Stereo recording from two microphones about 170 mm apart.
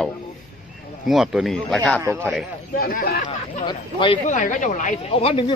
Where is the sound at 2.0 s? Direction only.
15° right (ahead or behind).